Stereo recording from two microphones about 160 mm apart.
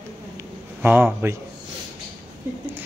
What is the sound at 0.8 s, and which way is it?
Speech, 10° right (ahead or behind).